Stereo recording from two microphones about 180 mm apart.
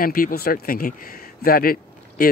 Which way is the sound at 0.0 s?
55° left (ahead or behind).